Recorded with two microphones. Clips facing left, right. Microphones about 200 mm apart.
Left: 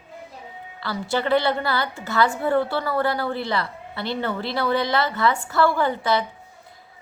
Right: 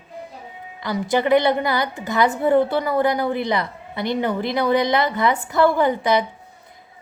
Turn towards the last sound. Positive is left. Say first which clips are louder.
# right 4 dB
turn(degrees=-15)  # may be behind; listen again after turning